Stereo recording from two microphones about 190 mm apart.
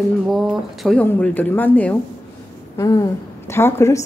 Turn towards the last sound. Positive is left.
turn(degrees=15)  # may be behind; listen again after turning